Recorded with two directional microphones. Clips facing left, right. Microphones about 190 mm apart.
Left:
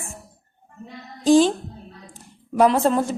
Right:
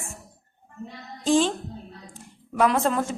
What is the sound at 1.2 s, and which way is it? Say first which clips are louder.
Speech: left 6 dB; 35° left (ahead or behind).